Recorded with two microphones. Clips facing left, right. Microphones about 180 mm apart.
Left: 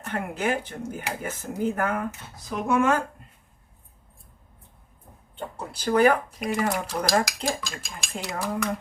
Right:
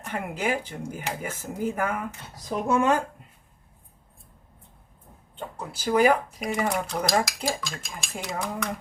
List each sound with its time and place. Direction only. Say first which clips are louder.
0.0 s speech: left 1 dB; 10° right (ahead or behind)
2.6 s speech: even; 20° right (ahead or behind)
5.4 s speech: left 1 dB; centre (ahead or behind)